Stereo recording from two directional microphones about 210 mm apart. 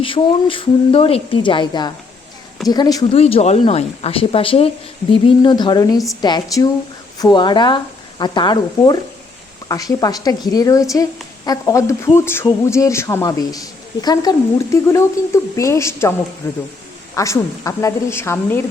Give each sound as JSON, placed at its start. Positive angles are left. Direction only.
{"t": 0.0, "sound": "speech", "side_deg": 25}
{"t": 17.2, "sound": "speech", "side_deg": 15}